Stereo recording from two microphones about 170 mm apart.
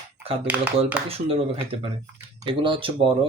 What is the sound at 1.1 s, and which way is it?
Speech, 35° right (ahead or behind).